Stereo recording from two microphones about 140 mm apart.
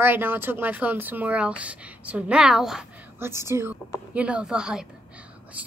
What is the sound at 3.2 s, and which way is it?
A woman's voice, 20° right (ahead or behind).